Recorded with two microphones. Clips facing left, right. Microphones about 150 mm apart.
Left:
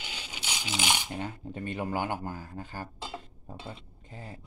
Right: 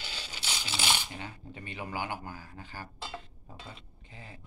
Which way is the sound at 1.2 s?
50° left (ahead or behind).